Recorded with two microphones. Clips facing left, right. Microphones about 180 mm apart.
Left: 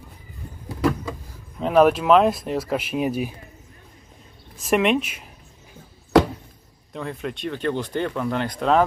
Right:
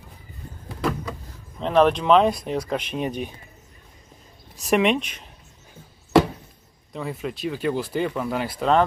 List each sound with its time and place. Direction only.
0.7 s vehicle: 5° left (ahead or behind)
1.6 s speech: 5° left (ahead or behind)
4.6 s speech: centre (ahead or behind)
6.9 s speech: 5° right (ahead or behind)